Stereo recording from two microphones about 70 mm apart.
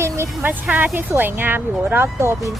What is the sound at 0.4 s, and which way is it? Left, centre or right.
A woman's voice, right.